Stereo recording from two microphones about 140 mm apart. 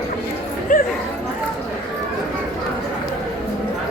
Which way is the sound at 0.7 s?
90° left.